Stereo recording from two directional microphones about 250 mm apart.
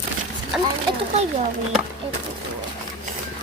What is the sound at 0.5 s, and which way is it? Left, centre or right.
Speech, centre.